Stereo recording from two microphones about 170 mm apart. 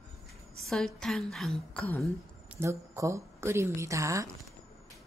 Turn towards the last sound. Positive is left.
turn(degrees=-20)  # may be behind; listen again after turning